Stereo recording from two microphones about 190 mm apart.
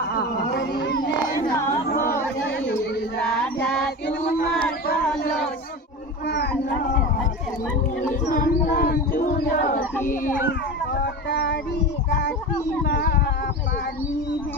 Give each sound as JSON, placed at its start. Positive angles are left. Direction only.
{"t": 0.1, "sound": "speech", "side_deg": 60}
{"t": 2.4, "sound": "chatter", "side_deg": 65}
{"t": 6.2, "sound": "a sound", "side_deg": 55}
{"t": 8.4, "sound": "speech", "side_deg": 45}
{"t": 11.2, "sound": "speech", "side_deg": 55}
{"t": 12.8, "sound": "speech", "side_deg": 55}